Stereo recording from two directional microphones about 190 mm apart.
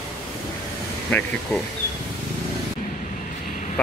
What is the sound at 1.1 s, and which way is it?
Speech, 10° left (ahead or behind).